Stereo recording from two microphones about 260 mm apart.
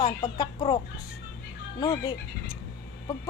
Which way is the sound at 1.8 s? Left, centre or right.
Centre.